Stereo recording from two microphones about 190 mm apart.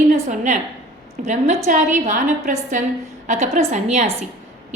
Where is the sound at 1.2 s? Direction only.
40° right (ahead or behind).